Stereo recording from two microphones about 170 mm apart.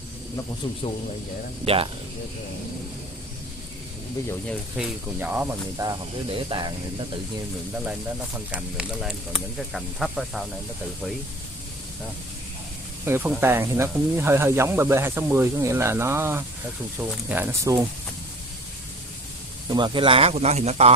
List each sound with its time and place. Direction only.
0.8 s speech: 35° left (ahead or behind)
4.5 s speech: 5° right (ahead or behind)
5.8 s speech: 25° right (ahead or behind)
8.5 s speech: 5° right (ahead or behind)
13.0 s speech: 15° right (ahead or behind)
19.7 s speech: 25° right (ahead or behind)